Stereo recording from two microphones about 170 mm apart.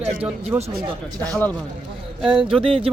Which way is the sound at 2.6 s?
35° right (ahead or behind).